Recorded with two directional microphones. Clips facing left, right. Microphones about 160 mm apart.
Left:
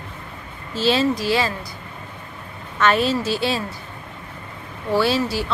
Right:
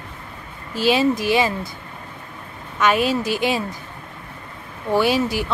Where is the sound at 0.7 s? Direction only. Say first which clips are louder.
Right 1 dB; 15° right (ahead or behind).